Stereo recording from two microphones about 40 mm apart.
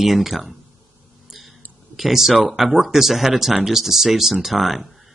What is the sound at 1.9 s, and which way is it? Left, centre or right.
Speech, centre.